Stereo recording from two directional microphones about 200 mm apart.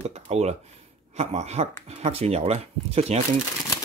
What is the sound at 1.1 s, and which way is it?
Speech, 30° right (ahead or behind).